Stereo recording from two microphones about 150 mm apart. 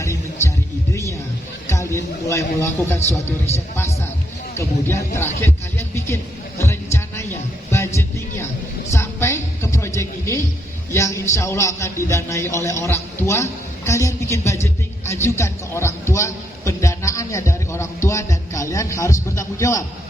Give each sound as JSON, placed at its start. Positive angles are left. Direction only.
{"t": 0.0, "sound": "music", "side_deg": 20}
{"t": 2.2, "sound": "speech", "side_deg": 20}
{"t": 4.5, "sound": "speech", "side_deg": 20}
{"t": 6.6, "sound": "a sound", "side_deg": 20}
{"t": 8.9, "sound": "a sound", "side_deg": 20}
{"t": 10.9, "sound": "a man's voice", "side_deg": 20}